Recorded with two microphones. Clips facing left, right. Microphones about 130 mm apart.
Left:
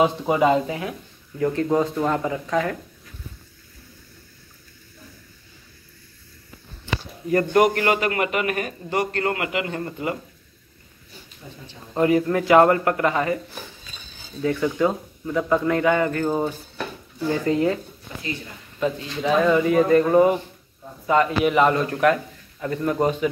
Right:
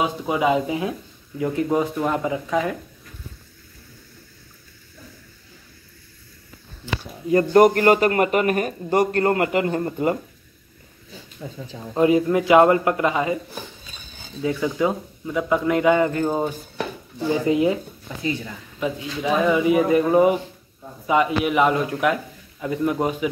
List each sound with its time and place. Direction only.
0.0 s speech: centre (ahead or behind)
0.7 s speech: 20° right (ahead or behind)
7.5 s a man's voice: 40° right (ahead or behind)
11.9 s speech: 20° right (ahead or behind)
14.4 s speech: 15° right (ahead or behind)
18.8 s speech: 10° right (ahead or behind)